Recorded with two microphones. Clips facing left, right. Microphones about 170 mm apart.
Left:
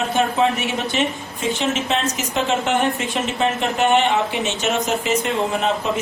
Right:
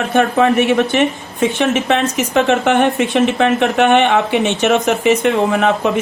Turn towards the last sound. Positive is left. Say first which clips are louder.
# right 6 dB
turn(degrees=-65)  # may be behind; listen again after turning